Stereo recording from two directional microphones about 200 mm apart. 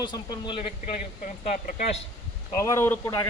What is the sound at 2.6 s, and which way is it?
Speech, 15° left (ahead or behind).